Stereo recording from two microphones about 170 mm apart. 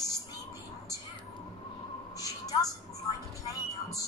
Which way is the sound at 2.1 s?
20° left (ahead or behind).